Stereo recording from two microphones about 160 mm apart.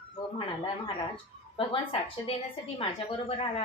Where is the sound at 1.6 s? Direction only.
35° left (ahead or behind).